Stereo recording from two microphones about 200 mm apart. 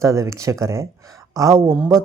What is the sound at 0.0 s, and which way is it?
Speech, 15° right (ahead or behind).